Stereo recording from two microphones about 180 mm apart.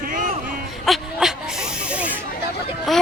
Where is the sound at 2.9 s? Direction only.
Centre (ahead or behind).